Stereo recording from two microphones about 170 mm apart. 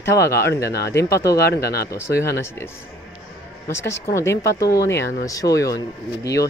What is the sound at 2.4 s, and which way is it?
Speech, 15° left (ahead or behind).